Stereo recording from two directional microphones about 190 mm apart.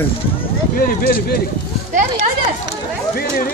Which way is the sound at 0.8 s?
50° left (ahead or behind).